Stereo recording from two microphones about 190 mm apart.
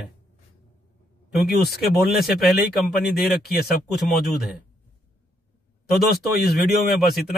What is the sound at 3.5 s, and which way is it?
Speech, 55° left (ahead or behind).